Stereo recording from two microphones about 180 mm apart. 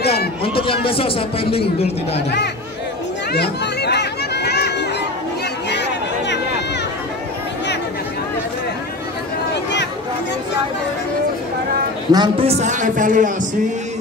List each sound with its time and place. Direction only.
0.0 s a sound: 60° left (ahead or behind)
0.4 s a sound: 30° left (ahead or behind)
0.8 s speech: 30° left (ahead or behind)
2.1 s speech: 70° left (ahead or behind)
3.3 s chatter: 65° left (ahead or behind)
12.1 s a man's voice: 25° right (ahead or behind); by 13.5 s 45° right (ahead or behind)